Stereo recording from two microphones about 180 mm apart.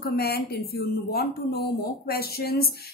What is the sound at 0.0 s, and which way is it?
A woman's voice, 60° left (ahead or behind).